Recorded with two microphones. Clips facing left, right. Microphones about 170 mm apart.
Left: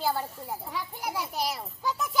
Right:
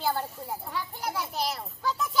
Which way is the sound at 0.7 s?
5° left (ahead or behind).